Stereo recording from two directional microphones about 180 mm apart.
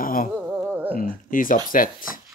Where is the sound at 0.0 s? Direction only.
50° left (ahead or behind).